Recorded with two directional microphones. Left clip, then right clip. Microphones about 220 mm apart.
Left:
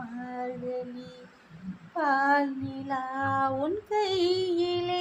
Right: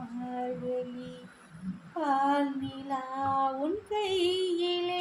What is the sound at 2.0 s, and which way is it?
Child singing, 25° left (ahead or behind).